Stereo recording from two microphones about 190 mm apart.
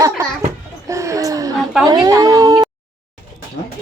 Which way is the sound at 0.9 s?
15° right (ahead or behind).